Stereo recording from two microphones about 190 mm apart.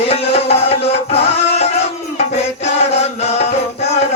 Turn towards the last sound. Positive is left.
turn(degrees=35)  # may be behind; listen again after turning